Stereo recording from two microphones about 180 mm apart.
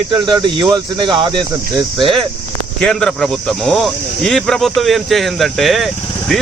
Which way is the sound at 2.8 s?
Centre (ahead or behind).